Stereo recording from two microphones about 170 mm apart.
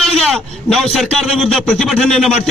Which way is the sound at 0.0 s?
5° left (ahead or behind).